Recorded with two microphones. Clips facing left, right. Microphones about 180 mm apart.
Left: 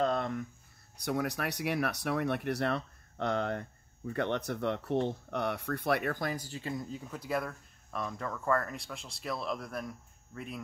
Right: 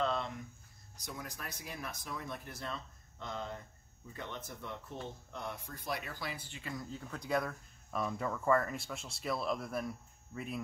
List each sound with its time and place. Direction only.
0.0 s a sound: 50° left (ahead or behind)
1.0 s speech: 70° left (ahead or behind); by 6.7 s 40° left (ahead or behind)
6.7 s speech: 25° left (ahead or behind)
7.0 s speech: 5° left (ahead or behind)